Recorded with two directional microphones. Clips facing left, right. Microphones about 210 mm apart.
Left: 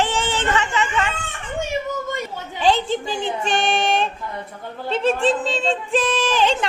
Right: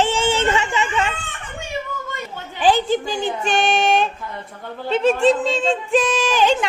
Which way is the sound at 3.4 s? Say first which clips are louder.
Right 3 dB; centre (ahead or behind).